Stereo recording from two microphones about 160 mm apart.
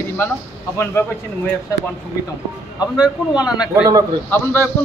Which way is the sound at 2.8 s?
5° right (ahead or behind).